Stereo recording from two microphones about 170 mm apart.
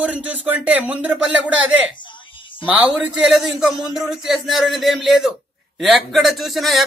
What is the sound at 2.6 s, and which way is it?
A man's voice, 10° right (ahead or behind).